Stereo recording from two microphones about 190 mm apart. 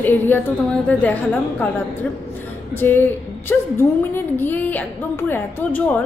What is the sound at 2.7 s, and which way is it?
A woman's voice, 10° left (ahead or behind).